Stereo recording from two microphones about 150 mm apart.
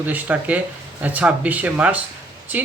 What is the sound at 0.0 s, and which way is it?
Speech, 10° right (ahead or behind).